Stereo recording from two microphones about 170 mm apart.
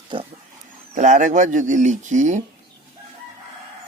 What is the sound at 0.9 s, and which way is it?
Speech, 45° right (ahead or behind).